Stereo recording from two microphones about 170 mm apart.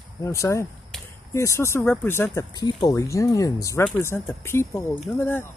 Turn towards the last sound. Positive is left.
turn(degrees=10)  # may be behind; listen again after turning